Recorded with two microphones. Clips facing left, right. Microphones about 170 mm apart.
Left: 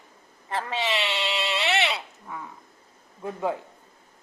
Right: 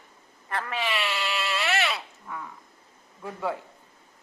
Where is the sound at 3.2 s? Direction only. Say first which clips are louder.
Left 3 dB; 20° left (ahead or behind).